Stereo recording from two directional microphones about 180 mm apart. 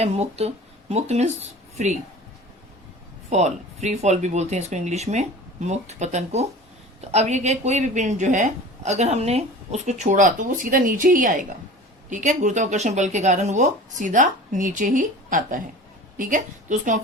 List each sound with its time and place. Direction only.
0.0 s speech: 35° right (ahead or behind)
3.2 s a woman's voice: 40° right (ahead or behind)